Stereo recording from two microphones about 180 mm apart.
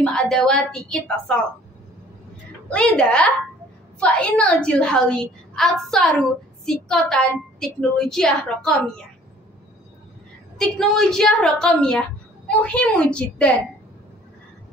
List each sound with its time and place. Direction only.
0.0 s a woman's voice: 5° left (ahead or behind)
2.7 s a woman's voice: 5° left (ahead or behind)
10.6 s a woman's voice: 5° left (ahead or behind)